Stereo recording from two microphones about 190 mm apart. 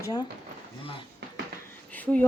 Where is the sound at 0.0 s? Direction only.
20° left (ahead or behind).